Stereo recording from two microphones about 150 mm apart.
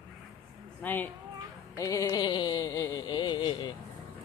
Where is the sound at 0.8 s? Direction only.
10° left (ahead or behind).